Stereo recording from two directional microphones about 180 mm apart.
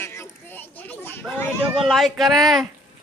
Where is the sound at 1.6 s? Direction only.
10° right (ahead or behind).